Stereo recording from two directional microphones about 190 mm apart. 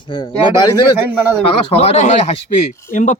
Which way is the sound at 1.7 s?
35° left (ahead or behind).